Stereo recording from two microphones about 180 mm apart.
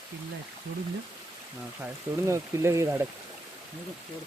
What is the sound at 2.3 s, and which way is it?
Speech, 15° right (ahead or behind).